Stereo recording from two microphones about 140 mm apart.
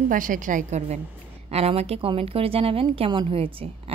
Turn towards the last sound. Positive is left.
turn(degrees=-40)  # may be behind; listen again after turning